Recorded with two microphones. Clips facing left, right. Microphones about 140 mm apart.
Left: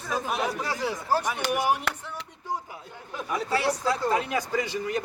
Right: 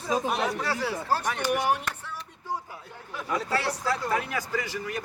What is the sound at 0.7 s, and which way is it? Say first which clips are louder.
Speech: even; 20° left (ahead or behind).